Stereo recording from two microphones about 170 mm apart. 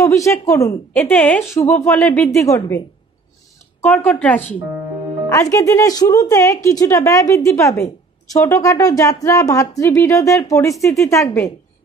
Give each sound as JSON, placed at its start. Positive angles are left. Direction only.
{"t": 0.0, "sound": "a woman's voice", "side_deg": 20}
{"t": 3.8, "sound": "a woman's voice", "side_deg": 10}